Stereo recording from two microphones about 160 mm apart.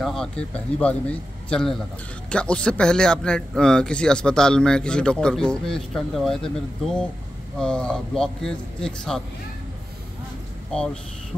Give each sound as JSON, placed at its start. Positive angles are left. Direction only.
{"t": 0.0, "sound": "a man's voice", "side_deg": 5}
{"t": 10.7, "sound": "speech", "side_deg": 5}